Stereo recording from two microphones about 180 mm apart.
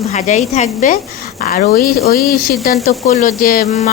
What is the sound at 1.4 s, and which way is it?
A woman's voice, 55° left (ahead or behind).